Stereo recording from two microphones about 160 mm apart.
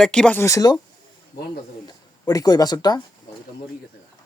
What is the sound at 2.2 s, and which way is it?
Speech, 20° left (ahead or behind).